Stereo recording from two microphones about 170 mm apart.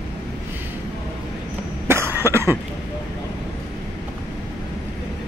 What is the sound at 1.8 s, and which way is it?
Cough, 15° right (ahead or behind).